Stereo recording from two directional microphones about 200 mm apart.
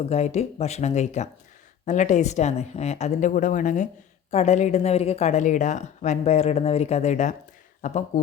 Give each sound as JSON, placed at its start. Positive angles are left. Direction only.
{"t": 0.0, "sound": "speech", "side_deg": 35}